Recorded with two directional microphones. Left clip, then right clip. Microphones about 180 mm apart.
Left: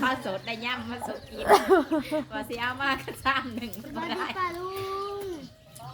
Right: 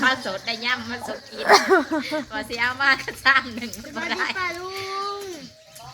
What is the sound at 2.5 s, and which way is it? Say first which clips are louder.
A woman's voice: right 8 dB; 15° left (ahead or behind).